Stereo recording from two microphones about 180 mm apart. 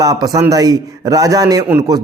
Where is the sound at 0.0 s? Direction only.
20° right (ahead or behind).